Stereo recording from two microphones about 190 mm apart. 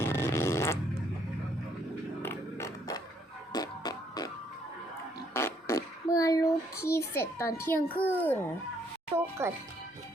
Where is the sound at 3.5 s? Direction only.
20° left (ahead or behind).